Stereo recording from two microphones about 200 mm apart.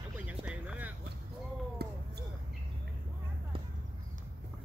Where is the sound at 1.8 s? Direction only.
55° right (ahead or behind).